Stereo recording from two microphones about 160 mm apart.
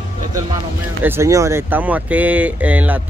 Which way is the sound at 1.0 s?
15° right (ahead or behind).